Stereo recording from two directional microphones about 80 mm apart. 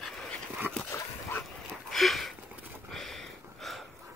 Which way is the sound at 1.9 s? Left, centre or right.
Centre.